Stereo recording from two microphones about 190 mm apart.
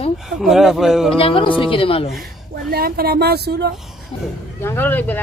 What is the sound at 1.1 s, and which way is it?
Speech, 30° left (ahead or behind).